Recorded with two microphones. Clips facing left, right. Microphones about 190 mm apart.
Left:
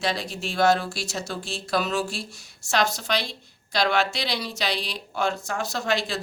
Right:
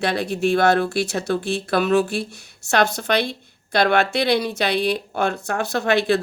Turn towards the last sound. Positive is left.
turn(degrees=-60)  # may be behind; listen again after turning